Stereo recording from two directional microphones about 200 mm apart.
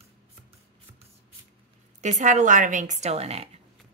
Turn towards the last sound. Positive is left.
turn(degrees=-30)  # may be behind; listen again after turning